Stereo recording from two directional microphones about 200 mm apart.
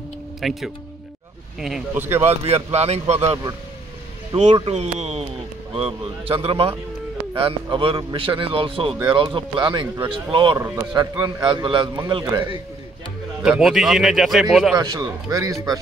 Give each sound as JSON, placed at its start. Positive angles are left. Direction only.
{"t": 0.4, "sound": "speech", "side_deg": 0}
{"t": 2.4, "sound": "a man's voice", "side_deg": -30}
{"t": 13.4, "sound": "a man's voice", "side_deg": 0}
{"t": 14.8, "sound": "speech", "side_deg": -20}